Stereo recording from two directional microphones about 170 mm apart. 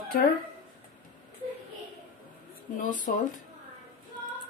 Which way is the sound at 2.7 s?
50° left (ahead or behind).